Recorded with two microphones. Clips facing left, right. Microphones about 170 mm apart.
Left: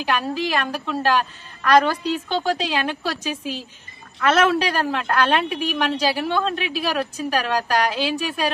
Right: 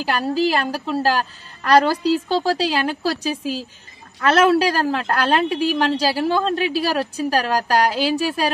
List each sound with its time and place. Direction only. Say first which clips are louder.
0.0 s a woman's voice: right 4 dB; 35° right (ahead or behind)